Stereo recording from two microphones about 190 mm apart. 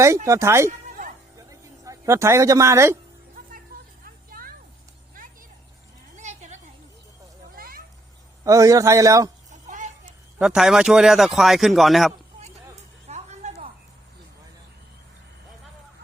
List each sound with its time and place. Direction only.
0.3 s a man's voice: 15° right (ahead or behind)
0.9 s music: 45° right (ahead or behind)
1.4 s music: 15° right (ahead or behind)
4.0 s a sound: 50° right (ahead or behind)
7.5 s cat: 50° right (ahead or behind)
8.4 s a man's voice: 15° right (ahead or behind)
9.5 s a sound: 40° right (ahead or behind)
10.3 s a man's voice: 5° right (ahead or behind)
13.1 s music: 35° right (ahead or behind)